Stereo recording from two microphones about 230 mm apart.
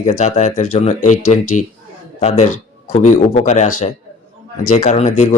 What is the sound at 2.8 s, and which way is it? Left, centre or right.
Speech, left.